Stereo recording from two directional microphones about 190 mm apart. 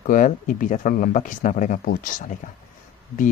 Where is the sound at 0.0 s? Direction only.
45° left (ahead or behind).